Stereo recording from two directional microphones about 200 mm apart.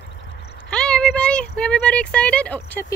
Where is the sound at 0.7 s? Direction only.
5° left (ahead or behind).